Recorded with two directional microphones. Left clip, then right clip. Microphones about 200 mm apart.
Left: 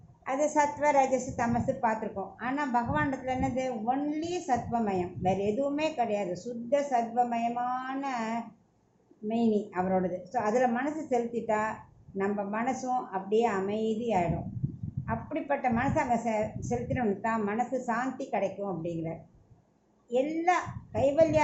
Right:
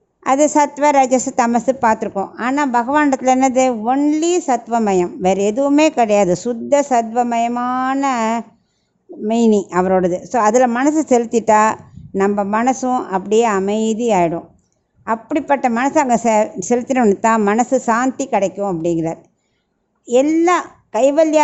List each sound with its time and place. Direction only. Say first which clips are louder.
0.3 s a woman's voice: right 13 dB; 50° right (ahead or behind)